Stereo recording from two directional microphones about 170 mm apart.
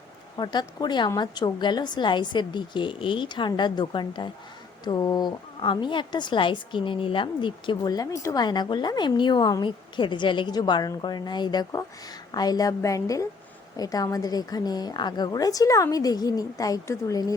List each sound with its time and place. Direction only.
0.3 s a woman's voice: 25° left (ahead or behind)